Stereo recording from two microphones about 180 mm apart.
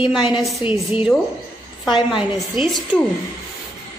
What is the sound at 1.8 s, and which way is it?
Speech, 25° left (ahead or behind).